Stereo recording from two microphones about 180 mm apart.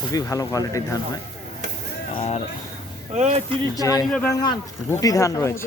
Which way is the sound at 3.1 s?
35° right (ahead or behind).